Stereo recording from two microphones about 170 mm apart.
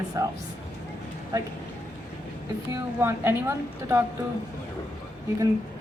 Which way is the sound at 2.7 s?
15° right (ahead or behind).